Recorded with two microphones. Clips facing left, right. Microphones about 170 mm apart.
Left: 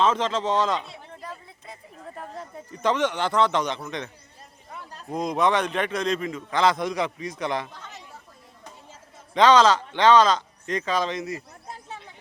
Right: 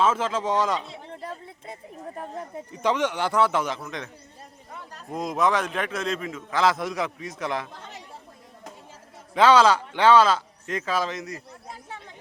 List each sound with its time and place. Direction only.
0.0 s speech: 5° right (ahead or behind)
1.0 s a sound: 25° right (ahead or behind)
2.1 s a man's voice: 20° right (ahead or behind); by 4.1 s centre (ahead or behind)
5.1 s a man's voice: centre (ahead or behind)
9.3 s speech: 10° right (ahead or behind)